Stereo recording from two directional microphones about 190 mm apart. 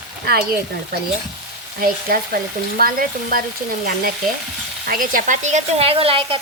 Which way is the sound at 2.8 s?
50° right (ahead or behind).